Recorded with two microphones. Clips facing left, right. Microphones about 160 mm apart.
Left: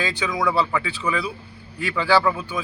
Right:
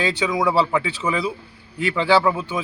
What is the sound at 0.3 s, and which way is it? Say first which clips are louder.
A man's voice: right 2 dB; 20° right (ahead or behind).